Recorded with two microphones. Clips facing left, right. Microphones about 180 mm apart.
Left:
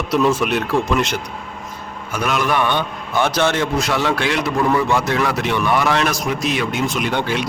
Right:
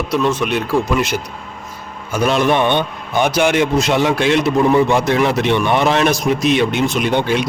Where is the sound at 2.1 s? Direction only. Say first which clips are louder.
Right 5 dB; 25° right (ahead or behind).